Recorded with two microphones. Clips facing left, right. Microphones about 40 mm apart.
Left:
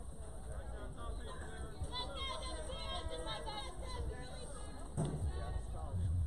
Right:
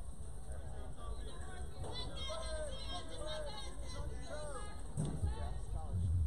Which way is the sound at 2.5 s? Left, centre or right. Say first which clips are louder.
Even; left.